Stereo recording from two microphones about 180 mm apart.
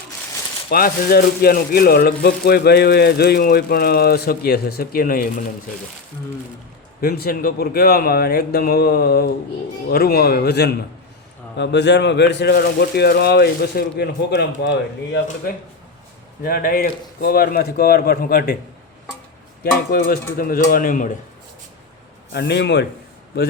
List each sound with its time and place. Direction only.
0.7 s speech: 55° left (ahead or behind)
7.0 s speech: 55° left (ahead or behind); by 15.5 s 70° left (ahead or behind)
16.4 s speech: 55° left (ahead or behind)
19.9 s speech: 55° left (ahead or behind)
22.3 s speech: 65° left (ahead or behind)